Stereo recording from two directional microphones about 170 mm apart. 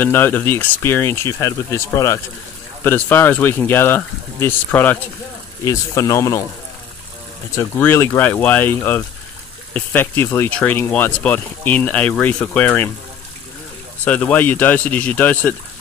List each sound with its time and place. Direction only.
0.0 s speech: 10° left (ahead or behind)
7.5 s speech: 15° left (ahead or behind)
14.0 s speech: 10° left (ahead or behind)